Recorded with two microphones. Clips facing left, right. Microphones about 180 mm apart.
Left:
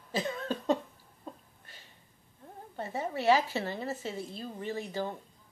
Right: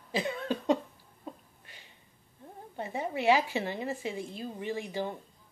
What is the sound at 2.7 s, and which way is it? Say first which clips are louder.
A woman's voice: right 1 dB; 15° right (ahead or behind).